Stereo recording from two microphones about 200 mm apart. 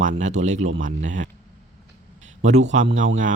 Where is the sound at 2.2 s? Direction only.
35° right (ahead or behind).